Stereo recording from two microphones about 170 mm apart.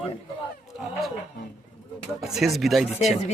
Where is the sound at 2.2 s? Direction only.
Centre (ahead or behind).